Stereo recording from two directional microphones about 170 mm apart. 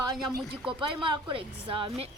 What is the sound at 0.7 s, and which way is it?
A woman's voice, 30° right (ahead or behind).